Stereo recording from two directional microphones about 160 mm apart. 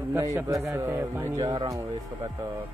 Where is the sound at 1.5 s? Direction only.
30° right (ahead or behind).